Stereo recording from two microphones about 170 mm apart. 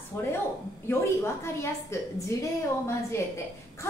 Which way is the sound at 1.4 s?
15° left (ahead or behind).